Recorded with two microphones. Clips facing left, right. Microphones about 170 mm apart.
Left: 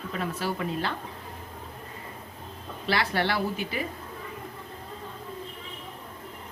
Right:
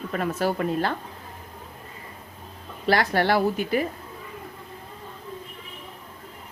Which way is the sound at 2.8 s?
45° right (ahead or behind).